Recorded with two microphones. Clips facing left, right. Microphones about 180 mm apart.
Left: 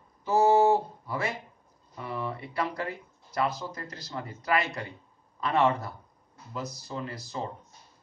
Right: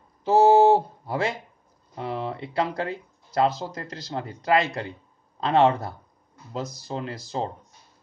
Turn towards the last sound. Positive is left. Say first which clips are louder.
# right 5 dB
turn(degrees=-85)